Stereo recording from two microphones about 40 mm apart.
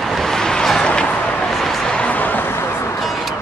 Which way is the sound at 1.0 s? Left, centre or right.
Left.